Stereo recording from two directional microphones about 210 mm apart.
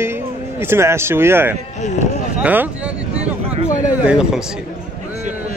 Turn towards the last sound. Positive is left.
turn(degrees=-5)  # may be behind; listen again after turning